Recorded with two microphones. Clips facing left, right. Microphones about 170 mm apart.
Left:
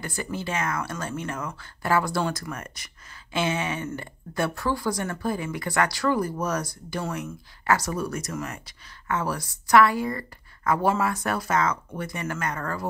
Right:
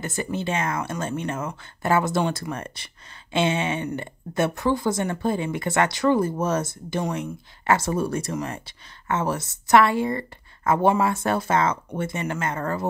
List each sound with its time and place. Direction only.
0.0 s speech: 25° right (ahead or behind)